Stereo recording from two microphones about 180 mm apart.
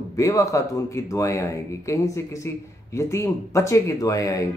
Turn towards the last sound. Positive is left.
turn(degrees=20)  # may be behind; listen again after turning